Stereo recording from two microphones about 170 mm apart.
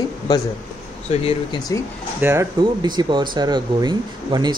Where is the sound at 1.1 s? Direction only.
35° left (ahead or behind).